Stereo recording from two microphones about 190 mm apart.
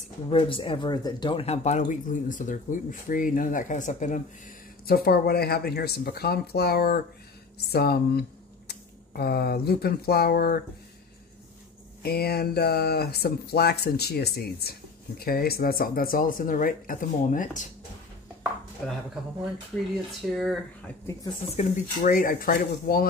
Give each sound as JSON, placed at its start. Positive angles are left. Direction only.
{"t": 0.3, "sound": "speech", "side_deg": 30}
{"t": 4.8, "sound": "speech", "side_deg": 55}
{"t": 12.0, "sound": "speech", "side_deg": 55}
{"t": 18.8, "sound": "speech", "side_deg": 0}
{"t": 20.2, "sound": "speech", "side_deg": 0}
{"t": 21.5, "sound": "speech", "side_deg": 45}